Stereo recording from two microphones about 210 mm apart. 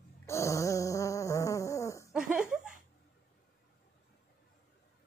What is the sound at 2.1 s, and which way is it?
Laughter, 5° right (ahead or behind).